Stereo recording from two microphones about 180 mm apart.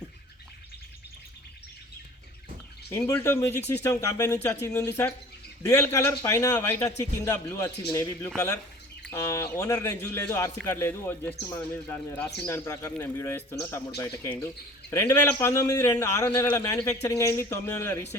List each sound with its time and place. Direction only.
2.9 s speech: 15° left (ahead or behind)